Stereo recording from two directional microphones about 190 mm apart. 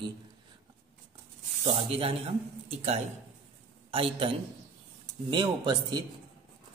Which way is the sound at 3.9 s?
30° right (ahead or behind).